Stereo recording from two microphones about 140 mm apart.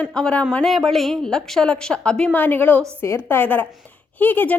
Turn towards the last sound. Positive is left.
turn(degrees=10)  # may be behind; listen again after turning